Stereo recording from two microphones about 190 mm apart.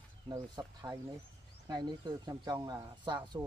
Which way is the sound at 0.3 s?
20° right (ahead or behind).